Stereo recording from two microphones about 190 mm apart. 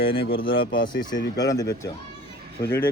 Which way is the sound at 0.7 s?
45° left (ahead or behind).